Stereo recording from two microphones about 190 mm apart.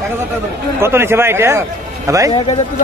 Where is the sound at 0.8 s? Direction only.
15° right (ahead or behind).